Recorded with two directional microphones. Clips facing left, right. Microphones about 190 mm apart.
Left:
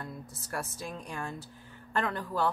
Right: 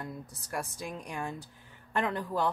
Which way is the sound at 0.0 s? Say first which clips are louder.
Right 1 dB; 15° right (ahead or behind).